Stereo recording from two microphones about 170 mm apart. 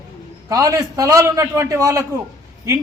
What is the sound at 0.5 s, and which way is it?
A man's voice, 20° right (ahead or behind).